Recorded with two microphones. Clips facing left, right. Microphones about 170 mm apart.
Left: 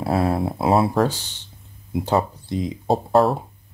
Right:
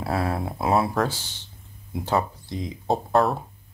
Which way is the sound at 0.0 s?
30° left (ahead or behind).